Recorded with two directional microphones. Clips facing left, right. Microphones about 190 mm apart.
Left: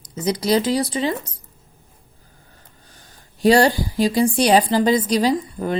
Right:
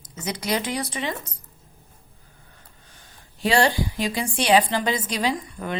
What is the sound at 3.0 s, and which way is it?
A woman's voice, 40° left (ahead or behind).